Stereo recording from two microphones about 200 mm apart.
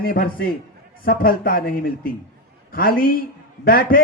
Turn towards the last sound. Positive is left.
turn(degrees=50)  # may be behind; listen again after turning